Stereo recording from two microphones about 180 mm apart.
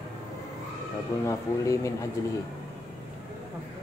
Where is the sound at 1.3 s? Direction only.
15° left (ahead or behind).